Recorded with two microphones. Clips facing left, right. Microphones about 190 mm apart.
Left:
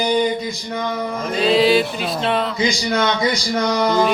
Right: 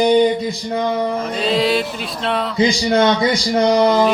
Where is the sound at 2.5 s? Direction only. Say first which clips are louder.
Right 4 dB; 30° right (ahead or behind).